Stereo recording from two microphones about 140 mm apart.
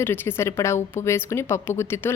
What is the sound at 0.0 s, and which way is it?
A woman's voice, 15° left (ahead or behind).